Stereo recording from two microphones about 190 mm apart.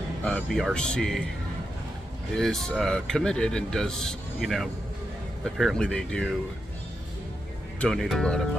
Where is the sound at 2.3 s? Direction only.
5° left (ahead or behind).